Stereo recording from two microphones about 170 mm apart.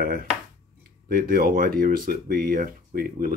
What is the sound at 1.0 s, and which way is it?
Speech, 60° right (ahead or behind).